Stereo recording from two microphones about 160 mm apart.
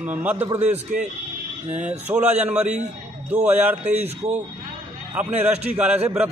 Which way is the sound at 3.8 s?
45° right (ahead or behind).